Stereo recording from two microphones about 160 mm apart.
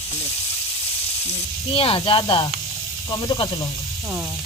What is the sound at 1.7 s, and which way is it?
Speech, 35° left (ahead or behind).